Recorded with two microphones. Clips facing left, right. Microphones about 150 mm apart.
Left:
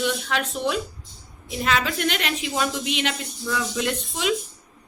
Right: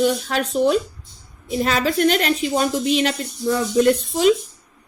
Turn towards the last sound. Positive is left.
turn(degrees=-40)  # may be behind; listen again after turning